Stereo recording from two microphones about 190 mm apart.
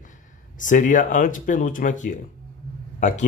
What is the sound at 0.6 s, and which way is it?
Speech, 45° left (ahead or behind).